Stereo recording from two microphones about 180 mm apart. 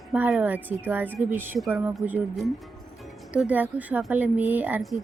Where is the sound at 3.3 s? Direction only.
5° right (ahead or behind).